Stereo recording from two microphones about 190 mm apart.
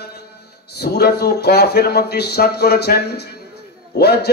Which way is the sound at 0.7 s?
55° left (ahead or behind).